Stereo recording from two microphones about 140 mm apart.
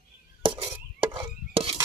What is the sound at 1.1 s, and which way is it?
Chopping, 40° right (ahead or behind).